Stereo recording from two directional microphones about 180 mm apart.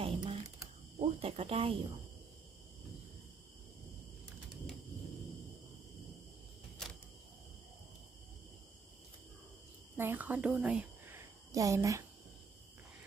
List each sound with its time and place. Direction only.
0.0 s typewriter: 30° right (ahead or behind)
0.9 s cricket: 35° right (ahead or behind)
9.9 s a sound: 10° right (ahead or behind)